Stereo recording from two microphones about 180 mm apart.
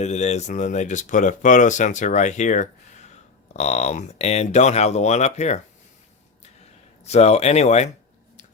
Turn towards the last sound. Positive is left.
turn(degrees=40)  # may be behind; listen again after turning